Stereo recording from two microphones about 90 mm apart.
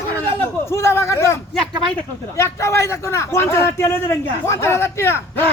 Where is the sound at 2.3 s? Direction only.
30° left (ahead or behind).